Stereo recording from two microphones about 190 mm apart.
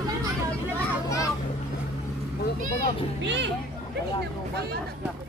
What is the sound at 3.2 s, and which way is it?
Speech, 70° right (ahead or behind).